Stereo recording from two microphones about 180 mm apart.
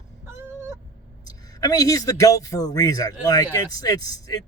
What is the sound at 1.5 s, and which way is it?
A man's voice, 20° left (ahead or behind).